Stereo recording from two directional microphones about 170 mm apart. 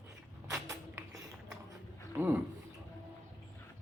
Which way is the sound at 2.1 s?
10° right (ahead or behind).